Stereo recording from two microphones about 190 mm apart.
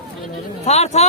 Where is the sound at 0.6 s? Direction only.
35° left (ahead or behind).